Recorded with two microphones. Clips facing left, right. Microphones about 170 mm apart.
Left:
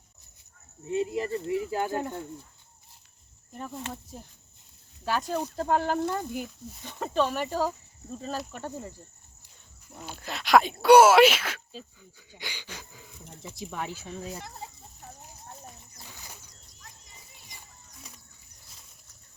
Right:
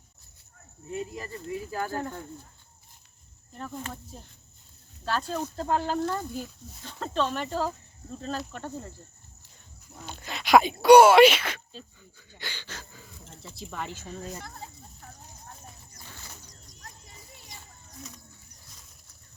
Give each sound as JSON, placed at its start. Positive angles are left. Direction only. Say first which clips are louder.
{"t": 0.9, "sound": "speech", "louder": "left 7 dB", "side_deg": 25}
{"t": 3.5, "sound": "speech", "louder": "even", "side_deg": 15}
{"t": 10.1, "sound": "speech", "louder": "right 1 dB", "side_deg": 0}